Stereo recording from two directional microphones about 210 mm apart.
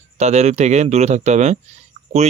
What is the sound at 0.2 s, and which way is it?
Speech, 30° right (ahead or behind).